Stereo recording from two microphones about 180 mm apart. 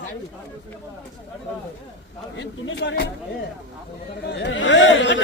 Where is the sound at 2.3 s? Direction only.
70° left (ahead or behind).